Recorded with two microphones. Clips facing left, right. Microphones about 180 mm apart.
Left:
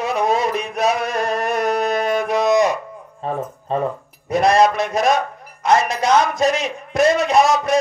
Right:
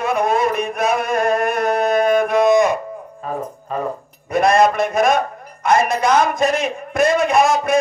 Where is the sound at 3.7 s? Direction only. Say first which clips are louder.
Left 3 dB; 30° left (ahead or behind).